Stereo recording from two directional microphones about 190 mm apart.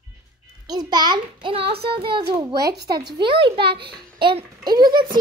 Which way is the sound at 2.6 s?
60° right (ahead or behind).